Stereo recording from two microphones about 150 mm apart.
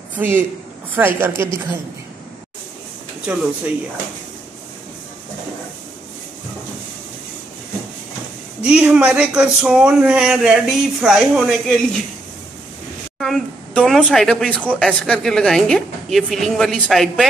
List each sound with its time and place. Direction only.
0.9 s a woman's voice: 15° right (ahead or behind)
3.3 s a woman's voice: 10° right (ahead or behind)
8.6 s speech: 5° right (ahead or behind)
13.2 s a woman's voice: centre (ahead or behind)